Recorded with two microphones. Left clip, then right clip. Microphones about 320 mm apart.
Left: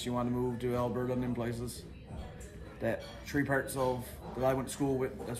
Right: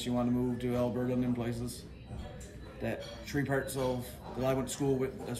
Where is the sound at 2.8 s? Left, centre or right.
Centre.